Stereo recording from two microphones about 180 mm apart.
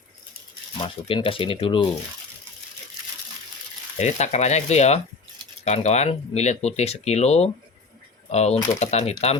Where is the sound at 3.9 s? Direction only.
40° left (ahead or behind).